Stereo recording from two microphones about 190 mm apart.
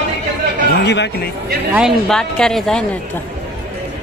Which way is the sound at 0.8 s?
65° left (ahead or behind).